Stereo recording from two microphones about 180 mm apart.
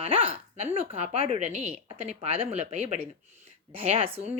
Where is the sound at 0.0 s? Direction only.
30° right (ahead or behind).